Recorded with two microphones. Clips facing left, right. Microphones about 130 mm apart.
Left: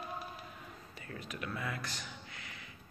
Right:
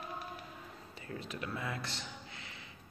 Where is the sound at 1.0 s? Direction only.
25° right (ahead or behind).